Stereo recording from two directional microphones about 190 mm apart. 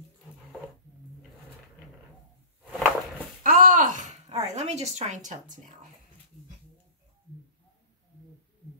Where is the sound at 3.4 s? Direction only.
45° right (ahead or behind).